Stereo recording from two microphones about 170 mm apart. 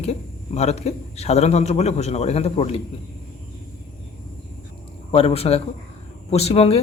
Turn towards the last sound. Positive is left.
turn(degrees=35)  # may be behind; listen again after turning